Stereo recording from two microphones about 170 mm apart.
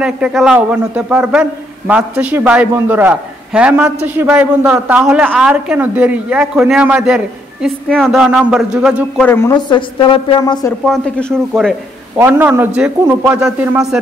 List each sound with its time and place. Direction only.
0.0 s a man's voice: 5° right (ahead or behind)
9.2 s a woman's voice: 10° left (ahead or behind)
9.6 s a woman's voice: 25° left (ahead or behind)
10.9 s speech: 5° left (ahead or behind)
12.2 s a man's voice: 10° right (ahead or behind)